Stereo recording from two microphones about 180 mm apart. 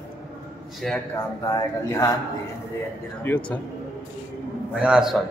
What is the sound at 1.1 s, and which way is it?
Speech, 20° left (ahead or behind).